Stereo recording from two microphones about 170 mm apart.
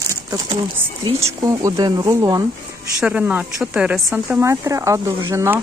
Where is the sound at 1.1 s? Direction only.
20° right (ahead or behind).